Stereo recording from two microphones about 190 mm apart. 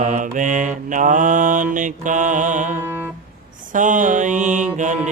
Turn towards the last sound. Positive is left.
turn(degrees=-40)  # may be behind; listen again after turning